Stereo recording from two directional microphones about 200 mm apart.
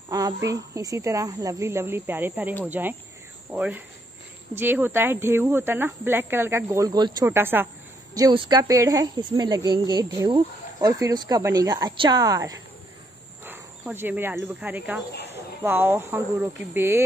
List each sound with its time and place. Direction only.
0.1 s a sound: 15° right (ahead or behind)
0.5 s speech: 15° right (ahead or behind)
8.1 s speech: 20° right (ahead or behind)